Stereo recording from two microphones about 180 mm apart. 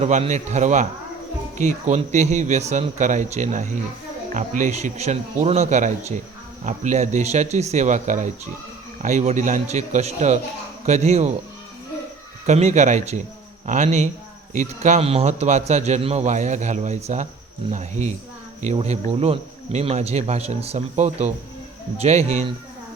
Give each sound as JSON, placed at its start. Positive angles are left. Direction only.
{"t": 0.0, "sound": "a man's voice", "side_deg": -40}
{"t": 12.5, "sound": "a man's voice", "side_deg": -40}